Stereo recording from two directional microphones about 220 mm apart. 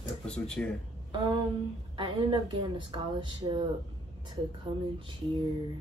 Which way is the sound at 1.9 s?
20° right (ahead or behind).